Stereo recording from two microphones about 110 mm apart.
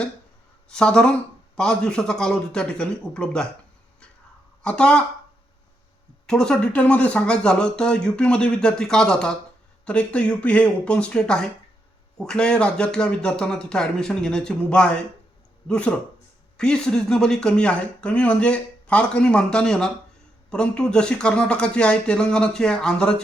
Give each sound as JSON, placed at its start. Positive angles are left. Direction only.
{"t": 0.7, "sound": "speech", "side_deg": 5}
{"t": 4.6, "sound": "speech", "side_deg": 10}
{"t": 6.2, "sound": "speech", "side_deg": 5}